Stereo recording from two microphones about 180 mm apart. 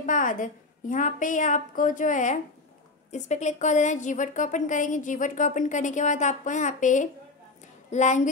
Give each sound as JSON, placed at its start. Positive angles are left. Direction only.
{"t": 0.0, "sound": "a woman's voice", "side_deg": 45}